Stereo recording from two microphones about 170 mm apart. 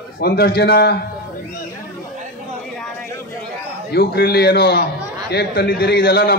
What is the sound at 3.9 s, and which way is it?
A man's voice, 65° left (ahead or behind).